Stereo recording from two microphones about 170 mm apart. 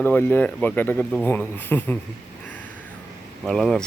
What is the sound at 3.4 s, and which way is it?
Speech, centre (ahead or behind).